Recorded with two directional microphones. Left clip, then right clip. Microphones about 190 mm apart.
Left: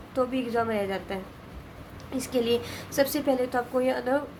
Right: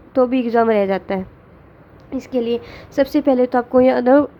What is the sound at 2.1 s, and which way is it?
A woman's voice, 35° right (ahead or behind).